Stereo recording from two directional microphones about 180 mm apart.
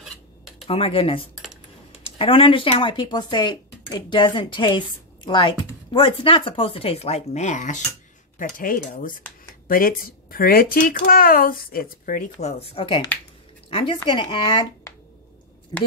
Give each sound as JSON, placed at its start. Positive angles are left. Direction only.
{"t": 0.7, "sound": "a woman's voice", "side_deg": 30}